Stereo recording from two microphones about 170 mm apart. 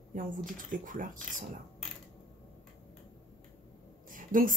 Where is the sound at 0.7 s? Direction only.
50° right (ahead or behind).